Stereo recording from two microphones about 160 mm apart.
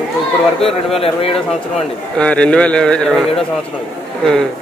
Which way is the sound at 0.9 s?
35° left (ahead or behind).